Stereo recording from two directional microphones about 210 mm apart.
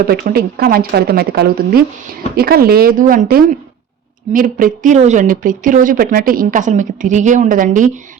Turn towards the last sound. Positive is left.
turn(degrees=-40)  # may be behind; listen again after turning